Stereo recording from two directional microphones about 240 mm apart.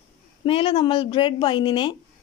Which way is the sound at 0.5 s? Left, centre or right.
Left.